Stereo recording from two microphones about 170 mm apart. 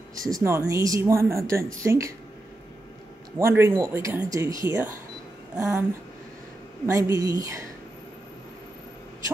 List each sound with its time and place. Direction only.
0.3 s speech: 15° right (ahead or behind)
3.3 s speech: 15° right (ahead or behind)
6.9 s a woman's voice: 20° right (ahead or behind)